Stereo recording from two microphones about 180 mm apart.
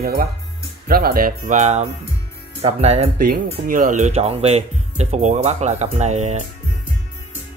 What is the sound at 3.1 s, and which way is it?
Speech, 55° right (ahead or behind).